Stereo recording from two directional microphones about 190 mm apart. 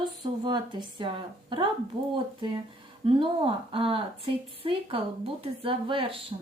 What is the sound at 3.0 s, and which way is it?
Speech, 30° right (ahead or behind).